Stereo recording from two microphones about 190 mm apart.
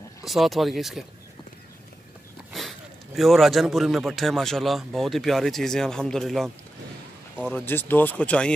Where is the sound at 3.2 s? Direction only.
Centre (ahead or behind).